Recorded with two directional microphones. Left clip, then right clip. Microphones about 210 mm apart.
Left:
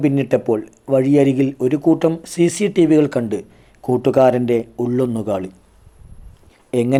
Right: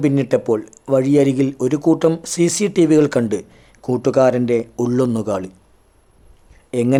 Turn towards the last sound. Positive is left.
turn(degrees=0)  # may be behind; listen again after turning